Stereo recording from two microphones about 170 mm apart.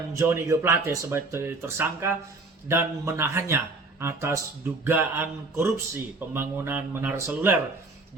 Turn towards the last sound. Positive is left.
turn(degrees=-15)  # may be behind; listen again after turning